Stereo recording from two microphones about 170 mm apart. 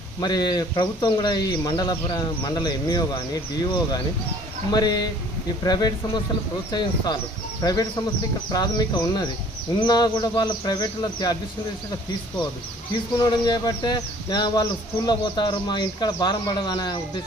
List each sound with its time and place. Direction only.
0.2 s speech: 25° left (ahead or behind)
4.7 s speech: 25° left (ahead or behind)
13.1 s speech: 25° left (ahead or behind)